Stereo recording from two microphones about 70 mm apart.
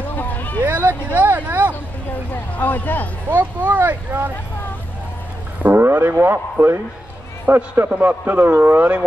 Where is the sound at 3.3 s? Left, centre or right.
Right.